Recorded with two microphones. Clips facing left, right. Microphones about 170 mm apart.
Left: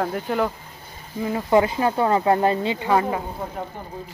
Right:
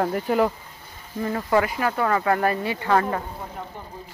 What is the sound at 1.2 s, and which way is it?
Speech, 20° left (ahead or behind).